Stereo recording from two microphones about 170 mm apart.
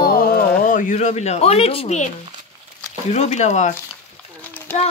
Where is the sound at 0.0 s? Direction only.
60° left (ahead or behind); by 2.0 s 40° left (ahead or behind).